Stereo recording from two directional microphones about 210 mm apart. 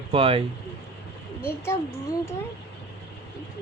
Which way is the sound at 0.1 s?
25° right (ahead or behind).